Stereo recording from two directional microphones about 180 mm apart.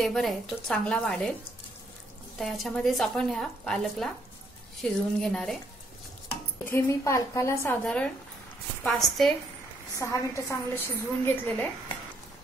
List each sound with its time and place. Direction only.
0.0 s a woman's voice: centre (ahead or behind)
2.3 s a woman's voice: centre (ahead or behind)
6.6 s a woman's voice: 15° left (ahead or behind)
7.8 s a woman's voice: 5° left (ahead or behind)
9.9 s a woman's voice: 15° left (ahead or behind)